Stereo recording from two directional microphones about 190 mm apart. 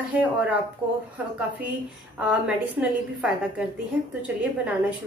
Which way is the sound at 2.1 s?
5° right (ahead or behind).